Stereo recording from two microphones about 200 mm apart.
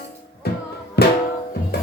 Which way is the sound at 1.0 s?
55° left (ahead or behind).